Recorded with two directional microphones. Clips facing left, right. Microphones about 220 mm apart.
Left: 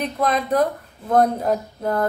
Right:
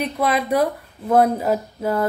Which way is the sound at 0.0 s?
5° right (ahead or behind).